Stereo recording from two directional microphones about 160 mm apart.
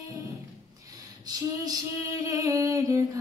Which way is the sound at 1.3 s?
20° right (ahead or behind).